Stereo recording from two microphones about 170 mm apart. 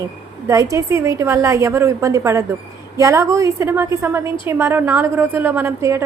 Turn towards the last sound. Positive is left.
turn(degrees=-15)  # may be behind; listen again after turning